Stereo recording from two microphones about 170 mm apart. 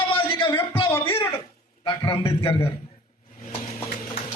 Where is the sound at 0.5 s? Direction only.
30° left (ahead or behind).